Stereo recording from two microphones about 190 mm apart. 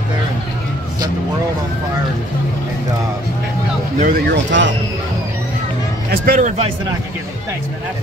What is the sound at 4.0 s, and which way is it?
Speech, 55° right (ahead or behind).